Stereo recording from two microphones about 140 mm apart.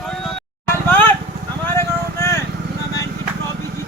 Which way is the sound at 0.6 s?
15° left (ahead or behind).